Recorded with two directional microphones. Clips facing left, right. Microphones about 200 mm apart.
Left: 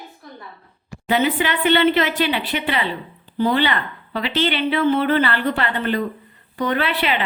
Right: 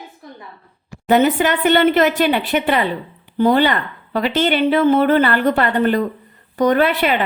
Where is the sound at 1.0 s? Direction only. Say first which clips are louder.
Right 5 dB; 45° right (ahead or behind).